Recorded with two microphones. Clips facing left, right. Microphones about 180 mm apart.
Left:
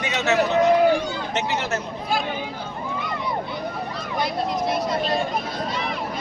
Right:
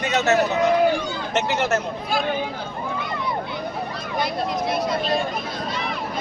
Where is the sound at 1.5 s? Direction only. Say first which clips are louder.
Right 4 dB; 45° right (ahead or behind).